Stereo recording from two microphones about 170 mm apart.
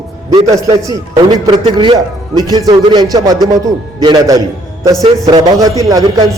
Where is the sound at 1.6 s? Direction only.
30° right (ahead or behind).